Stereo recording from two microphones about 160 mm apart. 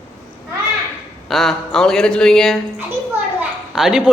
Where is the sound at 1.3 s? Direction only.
Centre (ahead or behind).